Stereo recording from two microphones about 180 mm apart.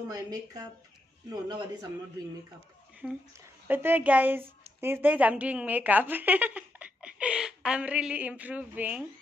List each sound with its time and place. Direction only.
0.1 s a man's voice: 20° right (ahead or behind)
3.0 s a woman's voice: 5° right (ahead or behind)